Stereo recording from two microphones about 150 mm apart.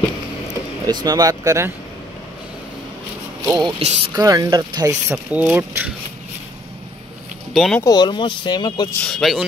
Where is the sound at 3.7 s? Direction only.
40° right (ahead or behind).